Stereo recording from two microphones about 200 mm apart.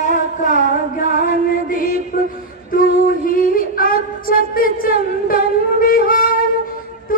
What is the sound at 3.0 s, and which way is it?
Female singing, 45° left (ahead or behind).